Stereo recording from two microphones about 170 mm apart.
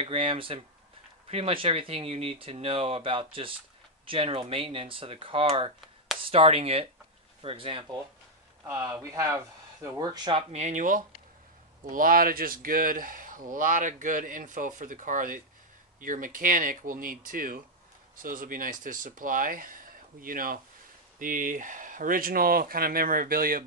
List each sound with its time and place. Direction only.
0.0 s speech: 35° right (ahead or behind)
8.6 s speech: 15° right (ahead or behind)
10.5 s speech: 45° right (ahead or behind)